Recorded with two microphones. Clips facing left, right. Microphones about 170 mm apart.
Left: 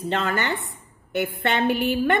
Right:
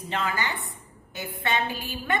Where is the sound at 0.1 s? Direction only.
65° left (ahead or behind).